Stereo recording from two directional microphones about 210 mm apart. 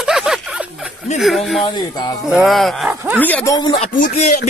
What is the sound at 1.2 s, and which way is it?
Speech, centre (ahead or behind).